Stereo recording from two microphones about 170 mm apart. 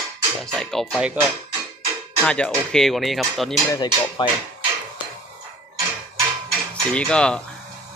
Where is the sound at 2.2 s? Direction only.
5° left (ahead or behind).